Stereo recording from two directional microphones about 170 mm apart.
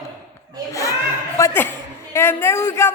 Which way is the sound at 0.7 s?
20° left (ahead or behind).